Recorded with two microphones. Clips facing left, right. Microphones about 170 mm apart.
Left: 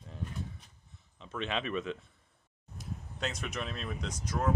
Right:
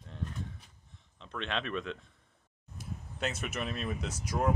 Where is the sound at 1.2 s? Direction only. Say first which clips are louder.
Left 1 dB; 5° left (ahead or behind).